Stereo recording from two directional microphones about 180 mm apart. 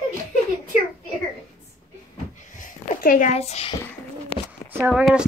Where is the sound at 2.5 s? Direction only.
50° left (ahead or behind); by 4.5 s 30° left (ahead or behind).